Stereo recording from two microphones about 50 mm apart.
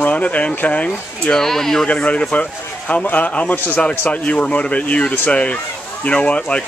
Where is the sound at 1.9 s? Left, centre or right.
Left.